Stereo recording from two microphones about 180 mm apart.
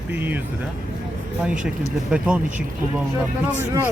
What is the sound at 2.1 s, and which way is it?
Speech, 5° right (ahead or behind).